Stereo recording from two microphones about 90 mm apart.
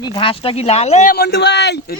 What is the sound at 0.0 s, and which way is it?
Speech, 65° left (ahead or behind).